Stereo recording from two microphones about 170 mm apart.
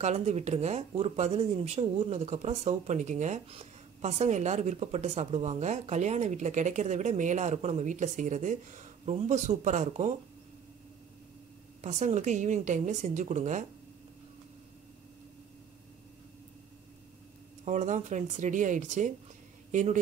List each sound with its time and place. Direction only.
0.0 s speech: 40° right (ahead or behind)
11.8 s a woman's voice: 40° right (ahead or behind)
17.6 s a woman's voice: 45° right (ahead or behind)